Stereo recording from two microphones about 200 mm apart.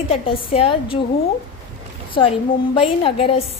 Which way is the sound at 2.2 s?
25° left (ahead or behind).